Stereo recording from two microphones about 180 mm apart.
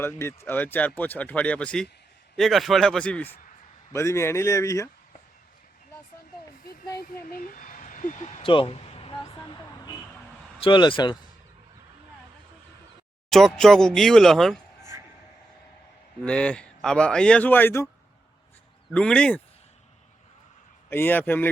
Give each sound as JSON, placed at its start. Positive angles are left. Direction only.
{"t": 0.0, "sound": "a man's voice", "side_deg": 15}
{"t": 7.0, "sound": "speech", "side_deg": 55}
{"t": 10.6, "sound": "speech", "side_deg": 25}
{"t": 13.3, "sound": "a man's voice", "side_deg": 0}
{"t": 16.2, "sound": "a man's voice", "side_deg": 5}
{"t": 18.9, "sound": "a man's voice", "side_deg": 5}
{"t": 20.9, "sound": "speech", "side_deg": 10}